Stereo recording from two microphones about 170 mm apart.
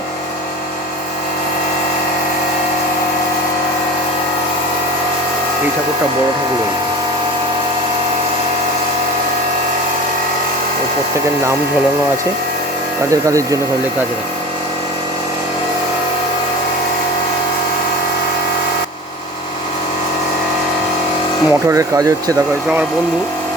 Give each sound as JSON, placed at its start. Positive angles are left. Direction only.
{"t": 13.1, "sound": "speech", "side_deg": -20}
{"t": 21.5, "sound": "speech", "side_deg": -15}